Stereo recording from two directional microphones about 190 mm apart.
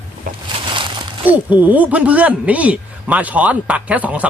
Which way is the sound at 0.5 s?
25° right (ahead or behind).